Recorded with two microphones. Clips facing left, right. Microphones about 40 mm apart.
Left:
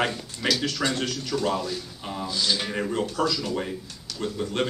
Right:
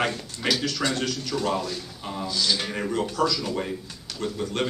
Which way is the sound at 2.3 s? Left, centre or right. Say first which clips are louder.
Right 1 dB; centre.